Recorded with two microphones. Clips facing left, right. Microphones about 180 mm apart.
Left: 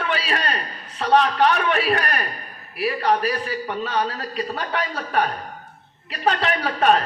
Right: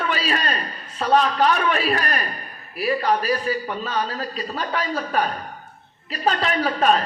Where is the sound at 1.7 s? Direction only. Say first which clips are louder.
Left 1 dB; 55° left (ahead or behind).